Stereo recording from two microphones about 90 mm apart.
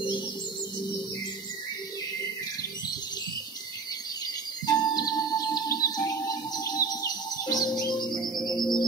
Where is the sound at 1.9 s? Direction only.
45° left (ahead or behind).